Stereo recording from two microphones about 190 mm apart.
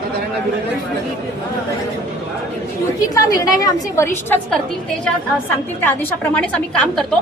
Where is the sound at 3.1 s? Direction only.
20° left (ahead or behind).